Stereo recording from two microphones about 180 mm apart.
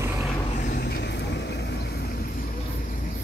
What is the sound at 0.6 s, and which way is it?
Vehicle, 60° left (ahead or behind).